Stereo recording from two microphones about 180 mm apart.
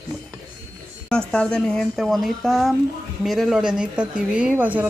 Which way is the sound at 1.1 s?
5° left (ahead or behind).